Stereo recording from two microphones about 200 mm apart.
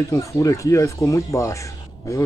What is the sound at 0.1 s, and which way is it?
Speech, 15° left (ahead or behind).